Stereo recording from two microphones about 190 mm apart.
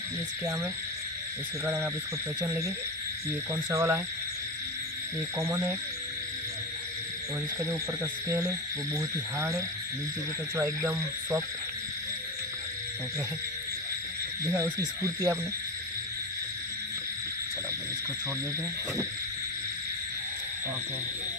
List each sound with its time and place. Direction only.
1.6 s speech: 10° right (ahead or behind)
5.5 s speech: 15° right (ahead or behind)
7.6 s speech: 15° right (ahead or behind)
14.4 s speech: 15° right (ahead or behind)